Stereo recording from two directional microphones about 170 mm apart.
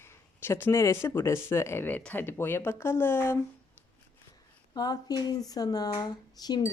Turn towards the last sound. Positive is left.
turn(degrees=25)  # may be behind; listen again after turning